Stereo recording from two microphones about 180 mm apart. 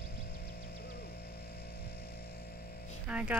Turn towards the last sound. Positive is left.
turn(degrees=-5)  # may be behind; listen again after turning